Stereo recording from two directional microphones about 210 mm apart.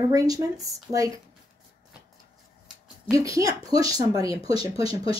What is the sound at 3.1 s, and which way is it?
A woman's voice, 15° right (ahead or behind).